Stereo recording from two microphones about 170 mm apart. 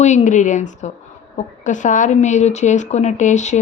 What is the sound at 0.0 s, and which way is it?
Speech, 45° left (ahead or behind).